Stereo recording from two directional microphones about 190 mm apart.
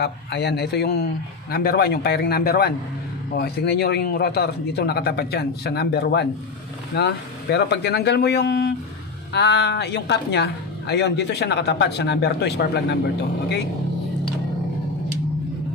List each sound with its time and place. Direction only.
0.0 s a woman's voice: 65° left (ahead or behind)